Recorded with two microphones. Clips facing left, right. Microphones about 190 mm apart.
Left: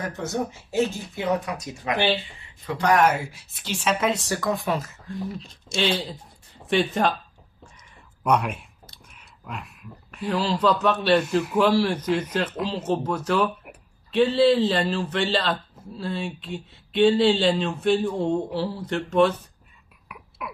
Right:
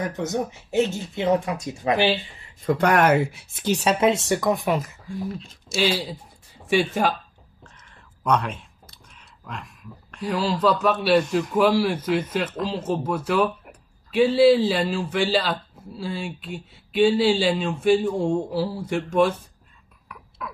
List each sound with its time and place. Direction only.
0.2 s speech: 20° right (ahead or behind)
2.6 s speech: 50° right (ahead or behind)
3.7 s speech: 40° right (ahead or behind)
4.1 s speech: 25° right (ahead or behind)
7.6 s a sound: 10° left (ahead or behind)
10.2 s speech: 5° right (ahead or behind)
20.1 s a sound: 10° left (ahead or behind)